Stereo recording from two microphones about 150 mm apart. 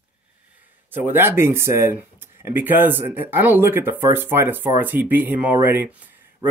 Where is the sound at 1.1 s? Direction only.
15° right (ahead or behind).